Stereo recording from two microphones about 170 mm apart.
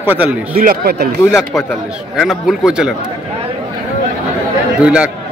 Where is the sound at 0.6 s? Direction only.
60° right (ahead or behind).